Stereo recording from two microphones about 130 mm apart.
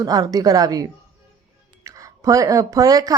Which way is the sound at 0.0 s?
30° right (ahead or behind).